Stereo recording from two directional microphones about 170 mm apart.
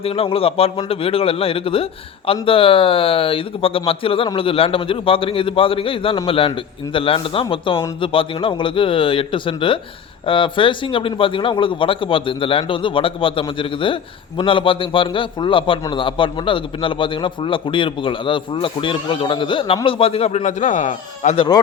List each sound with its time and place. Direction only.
0.0 s speech: 35° left (ahead or behind)